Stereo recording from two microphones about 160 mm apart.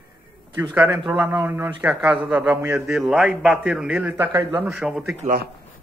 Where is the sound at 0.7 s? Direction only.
15° right (ahead or behind).